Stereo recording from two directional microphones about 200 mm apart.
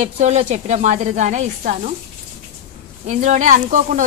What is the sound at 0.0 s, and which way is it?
Speech, 35° right (ahead or behind).